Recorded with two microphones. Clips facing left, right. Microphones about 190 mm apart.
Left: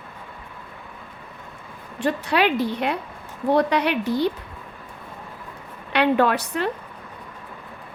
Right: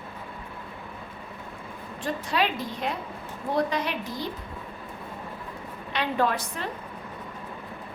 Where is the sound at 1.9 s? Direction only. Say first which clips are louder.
Left 6 dB; 70° left (ahead or behind).